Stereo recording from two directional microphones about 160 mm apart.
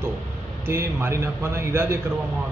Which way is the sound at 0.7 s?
15° right (ahead or behind).